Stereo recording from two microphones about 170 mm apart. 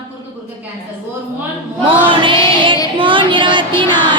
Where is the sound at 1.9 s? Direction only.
30° right (ahead or behind).